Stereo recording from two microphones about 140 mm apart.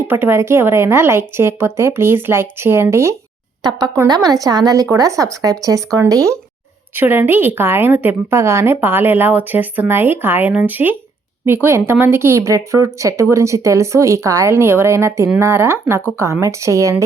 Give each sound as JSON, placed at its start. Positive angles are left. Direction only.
{"t": 0.1, "sound": "a woman's voice", "side_deg": -15}